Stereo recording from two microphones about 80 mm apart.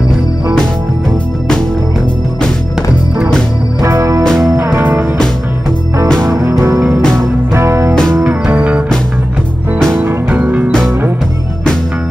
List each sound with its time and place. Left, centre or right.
3.8 s music: right
4.2 s music: centre
4.7 s music: right
7.2 s music: right
7.9 s music: centre
8.5 s music: centre
9.9 s music: right